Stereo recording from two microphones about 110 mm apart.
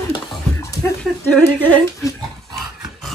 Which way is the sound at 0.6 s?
25° left (ahead or behind).